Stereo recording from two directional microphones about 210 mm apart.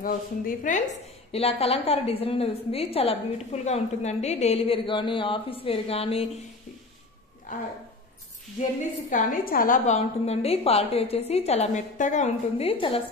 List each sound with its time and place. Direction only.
0.0 s a woman's voice: 40° left (ahead or behind)
9.1 s a woman's voice: 40° left (ahead or behind)